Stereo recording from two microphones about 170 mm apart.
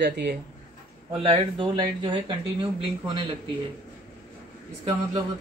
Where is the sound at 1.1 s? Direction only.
30° right (ahead or behind).